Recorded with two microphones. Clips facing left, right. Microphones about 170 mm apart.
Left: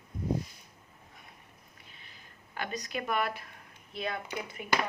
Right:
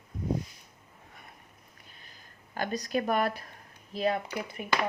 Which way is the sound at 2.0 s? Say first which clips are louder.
Right 1 dB; 40° right (ahead or behind).